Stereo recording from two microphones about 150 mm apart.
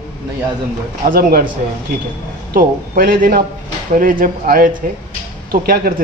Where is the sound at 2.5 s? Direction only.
75° right (ahead or behind).